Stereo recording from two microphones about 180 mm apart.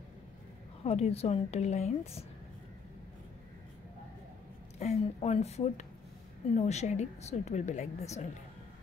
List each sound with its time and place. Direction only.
0.8 s a woman's voice: 35° left (ahead or behind)
4.7 s a woman's voice: 35° left (ahead or behind)